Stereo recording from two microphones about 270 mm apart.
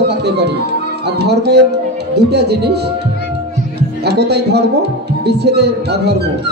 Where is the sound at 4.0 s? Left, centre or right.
Right.